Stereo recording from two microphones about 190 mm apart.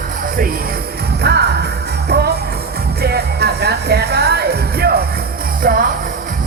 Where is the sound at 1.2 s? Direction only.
60° right (ahead or behind).